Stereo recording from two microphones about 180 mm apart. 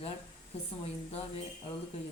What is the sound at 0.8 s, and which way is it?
Speech, 35° left (ahead or behind).